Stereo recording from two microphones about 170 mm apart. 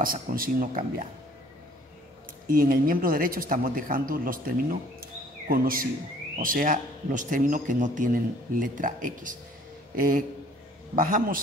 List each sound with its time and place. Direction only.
0.0 s speech: 55° right (ahead or behind)
2.4 s speech: 55° right (ahead or behind)